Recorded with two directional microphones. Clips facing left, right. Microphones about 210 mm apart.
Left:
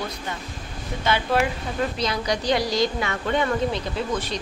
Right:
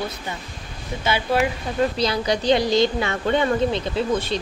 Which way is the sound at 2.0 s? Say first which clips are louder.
Right 3 dB; 30° right (ahead or behind).